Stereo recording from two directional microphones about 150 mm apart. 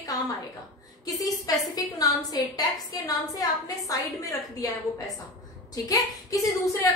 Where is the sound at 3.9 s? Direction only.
20° left (ahead or behind).